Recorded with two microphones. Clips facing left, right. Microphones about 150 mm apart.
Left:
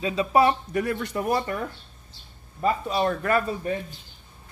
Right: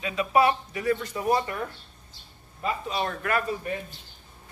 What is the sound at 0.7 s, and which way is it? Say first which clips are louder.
Speech: left 1 dB; 60° left (ahead or behind).